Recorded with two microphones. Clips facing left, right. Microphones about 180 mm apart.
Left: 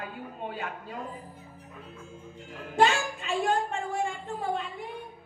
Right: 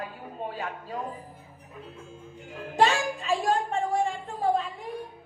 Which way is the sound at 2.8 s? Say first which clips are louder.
Right 1 dB; 40° right (ahead or behind).